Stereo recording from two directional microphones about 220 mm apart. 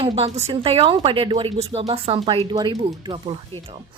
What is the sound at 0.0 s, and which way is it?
A woman's voice, 25° right (ahead or behind).